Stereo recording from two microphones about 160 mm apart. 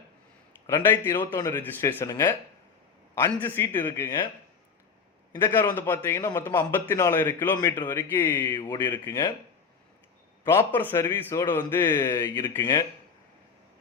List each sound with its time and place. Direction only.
0.7 s a man's voice: 15° left (ahead or behind)
3.3 s a man's voice: 15° left (ahead or behind)
5.4 s a man's voice: 15° left (ahead or behind)
9.0 s speech: 25° left (ahead or behind)
10.4 s a man's voice: 15° left (ahead or behind)